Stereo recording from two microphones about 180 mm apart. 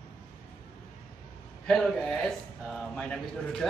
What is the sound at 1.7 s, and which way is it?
A man's voice, 5° left (ahead or behind).